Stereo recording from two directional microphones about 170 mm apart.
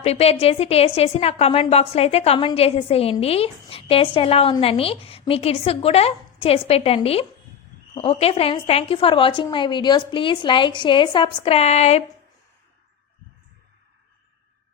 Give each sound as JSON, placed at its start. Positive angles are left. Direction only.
{"t": 0.0, "sound": "a woman's voice", "side_deg": 35}